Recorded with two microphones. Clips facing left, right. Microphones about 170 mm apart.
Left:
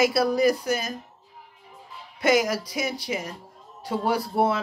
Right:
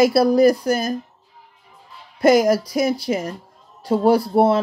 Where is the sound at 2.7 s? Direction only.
50° right (ahead or behind).